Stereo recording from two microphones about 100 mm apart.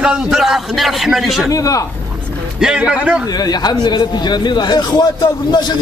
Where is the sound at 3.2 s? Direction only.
40° left (ahead or behind).